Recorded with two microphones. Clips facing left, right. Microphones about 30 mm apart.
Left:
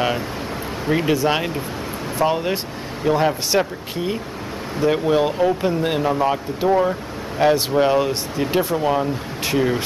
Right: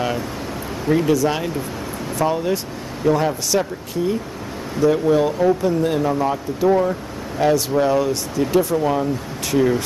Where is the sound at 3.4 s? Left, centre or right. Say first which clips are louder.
Left 1 dB; left.